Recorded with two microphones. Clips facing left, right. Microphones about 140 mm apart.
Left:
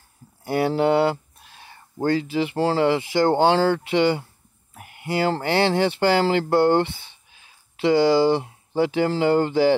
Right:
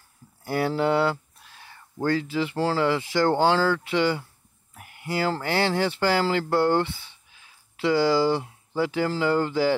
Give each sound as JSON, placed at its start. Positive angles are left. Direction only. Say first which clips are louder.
{"t": 0.4, "sound": "speech", "louder": "left 4 dB", "side_deg": 20}